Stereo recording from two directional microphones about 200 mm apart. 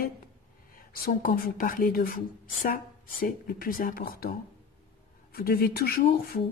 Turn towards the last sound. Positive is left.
turn(degrees=50)  # may be behind; listen again after turning